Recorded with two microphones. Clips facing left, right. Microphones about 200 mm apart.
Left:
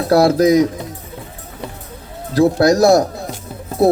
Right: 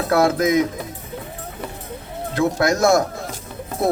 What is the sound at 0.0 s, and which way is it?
Speech, 35° left (ahead or behind).